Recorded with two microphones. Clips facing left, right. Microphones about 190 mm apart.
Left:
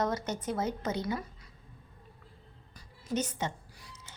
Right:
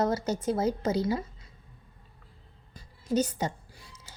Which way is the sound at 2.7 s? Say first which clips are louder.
Right 6 dB; 30° right (ahead or behind).